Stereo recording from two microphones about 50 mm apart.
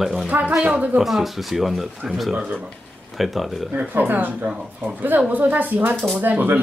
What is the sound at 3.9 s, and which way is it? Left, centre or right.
Speech, right.